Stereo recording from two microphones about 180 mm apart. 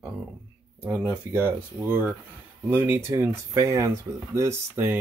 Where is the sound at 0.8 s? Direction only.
10° right (ahead or behind).